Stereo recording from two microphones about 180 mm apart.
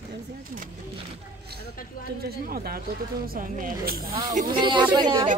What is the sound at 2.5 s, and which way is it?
Speech, 55° right (ahead or behind).